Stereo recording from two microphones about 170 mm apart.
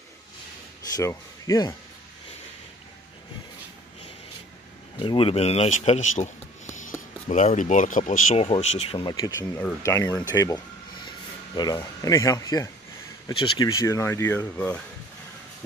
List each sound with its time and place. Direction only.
0.9 s speech: 20° left (ahead or behind)
4.9 s speech: 30° left (ahead or behind); by 8.5 s 50° left (ahead or behind)
8.5 s speech: 35° left (ahead or behind)
9.0 s speech: 20° left (ahead or behind)